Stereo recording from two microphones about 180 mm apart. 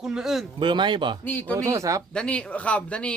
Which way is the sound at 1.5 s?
15° right (ahead or behind).